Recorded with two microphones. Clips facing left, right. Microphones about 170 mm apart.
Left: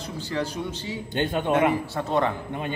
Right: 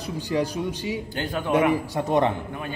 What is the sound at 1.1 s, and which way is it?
Speech, 20° left (ahead or behind).